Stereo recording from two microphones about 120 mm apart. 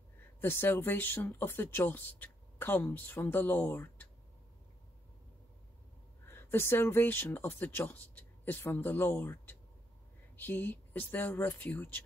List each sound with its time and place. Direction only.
0.4 s speech: 20° left (ahead or behind)
6.2 s speech: 20° left (ahead or behind)